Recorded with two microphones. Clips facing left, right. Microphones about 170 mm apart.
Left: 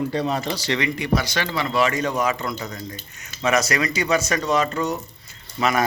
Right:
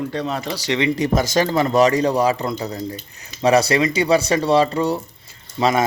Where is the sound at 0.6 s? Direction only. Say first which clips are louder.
Right 3 dB; 15° right (ahead or behind).